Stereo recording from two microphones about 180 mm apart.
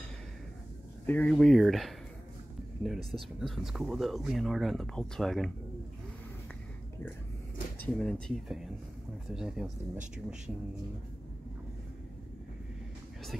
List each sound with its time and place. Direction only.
1.0 s speech: 10° left (ahead or behind)
7.8 s speech: 5° left (ahead or behind)
9.9 s speech: 45° right (ahead or behind)